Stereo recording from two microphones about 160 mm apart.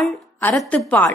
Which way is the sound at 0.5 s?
5° left (ahead or behind).